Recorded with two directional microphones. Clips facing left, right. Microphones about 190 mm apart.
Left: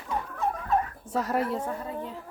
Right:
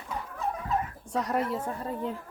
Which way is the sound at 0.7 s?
60° left (ahead or behind).